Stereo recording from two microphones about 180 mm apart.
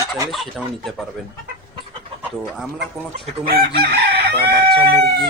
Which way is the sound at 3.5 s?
60° right (ahead or behind).